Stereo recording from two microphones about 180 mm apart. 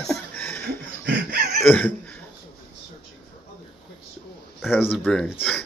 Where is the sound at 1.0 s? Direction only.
60° right (ahead or behind).